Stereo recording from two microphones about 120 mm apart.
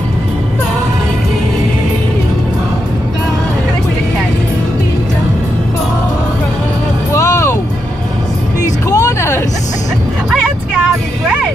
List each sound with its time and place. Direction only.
7.2 s vehicle: 25° left (ahead or behind)
8.9 s music: 25° left (ahead or behind)